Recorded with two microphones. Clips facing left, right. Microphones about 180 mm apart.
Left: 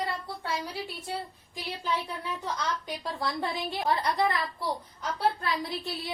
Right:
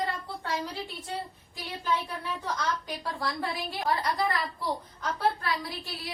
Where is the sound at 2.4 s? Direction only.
20° left (ahead or behind).